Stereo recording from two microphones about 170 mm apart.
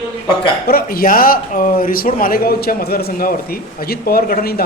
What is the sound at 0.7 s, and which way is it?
Speech, 60° left (ahead or behind).